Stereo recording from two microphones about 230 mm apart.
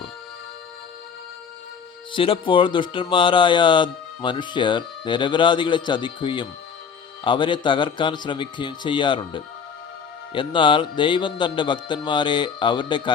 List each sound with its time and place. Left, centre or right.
2.1 s speech: left